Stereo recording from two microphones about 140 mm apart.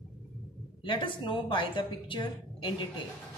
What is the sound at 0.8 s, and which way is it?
A woman's voice, 35° left (ahead or behind).